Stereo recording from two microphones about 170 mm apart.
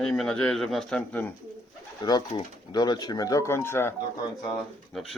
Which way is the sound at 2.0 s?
25° left (ahead or behind).